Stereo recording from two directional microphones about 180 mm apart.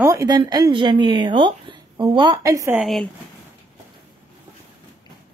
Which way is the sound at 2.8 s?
Centre (ahead or behind).